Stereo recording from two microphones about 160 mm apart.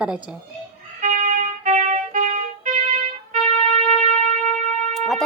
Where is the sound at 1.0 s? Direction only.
50° right (ahead or behind).